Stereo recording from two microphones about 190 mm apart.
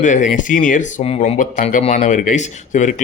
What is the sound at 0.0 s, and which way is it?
Speech, 40° left (ahead or behind).